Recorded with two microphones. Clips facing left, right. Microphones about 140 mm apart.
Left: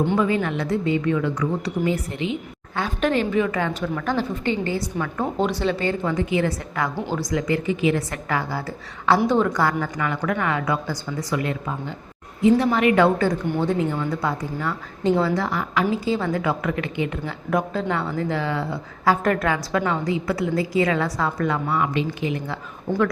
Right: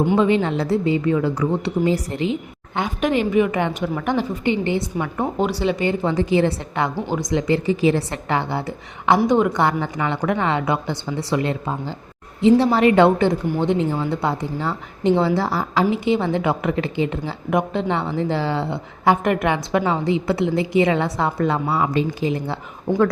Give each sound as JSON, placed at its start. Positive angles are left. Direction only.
{"t": 0.2, "sound": "a woman's voice", "side_deg": -25}
{"t": 2.7, "sound": "a woman's voice", "side_deg": -15}
{"t": 22.9, "sound": "speech", "side_deg": -15}